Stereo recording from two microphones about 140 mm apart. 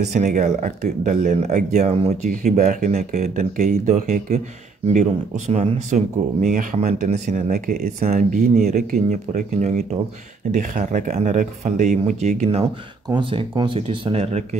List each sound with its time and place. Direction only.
0.1 s speech: 60° right (ahead or behind); by 7.9 s 80° right
8.0 s speech: 55° right (ahead or behind)
10.5 s speech: 70° right (ahead or behind); by 12.4 s 55° right (ahead or behind)
13.1 s speech: 35° right (ahead or behind)